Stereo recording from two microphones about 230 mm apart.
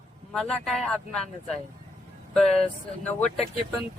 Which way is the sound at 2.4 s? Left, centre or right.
Left.